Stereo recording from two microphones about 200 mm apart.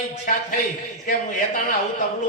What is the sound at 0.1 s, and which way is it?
A man's voice, 40° left (ahead or behind).